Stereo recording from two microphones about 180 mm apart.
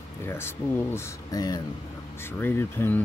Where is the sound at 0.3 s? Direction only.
15° left (ahead or behind).